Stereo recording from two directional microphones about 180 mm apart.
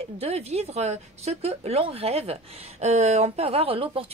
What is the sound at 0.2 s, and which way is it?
Speech, 35° right (ahead or behind).